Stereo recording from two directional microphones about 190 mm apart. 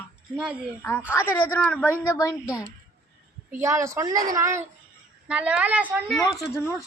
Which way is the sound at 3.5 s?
15° right (ahead or behind).